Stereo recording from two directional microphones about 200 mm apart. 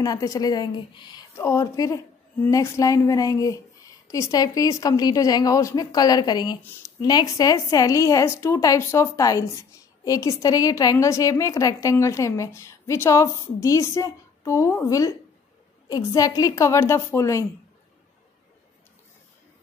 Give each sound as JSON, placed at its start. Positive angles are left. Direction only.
{"t": 0.0, "sound": "a woman's voice", "side_deg": 15}